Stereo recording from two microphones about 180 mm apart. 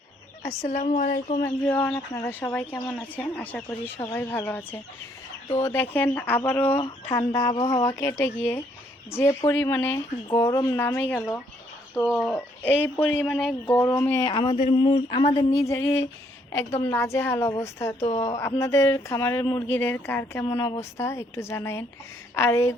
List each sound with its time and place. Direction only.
0.6 s speech: 50° left (ahead or behind)
1.4 s speech: 10° left (ahead or behind)
7.1 s a sound: 20° left (ahead or behind)
7.9 s speech: 15° left (ahead or behind)
13.7 s speech: 15° left (ahead or behind)
14.3 s a sound: 25° left (ahead or behind)
16.5 s speech: 15° left (ahead or behind)
20.5 s a sound: 25° left (ahead or behind)
21.0 s speech: 15° left (ahead or behind)